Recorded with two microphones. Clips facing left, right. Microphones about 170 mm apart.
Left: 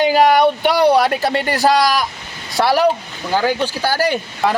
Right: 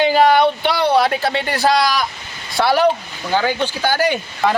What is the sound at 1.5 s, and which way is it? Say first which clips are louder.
Speech: left 2 dB; 40° left (ahead or behind).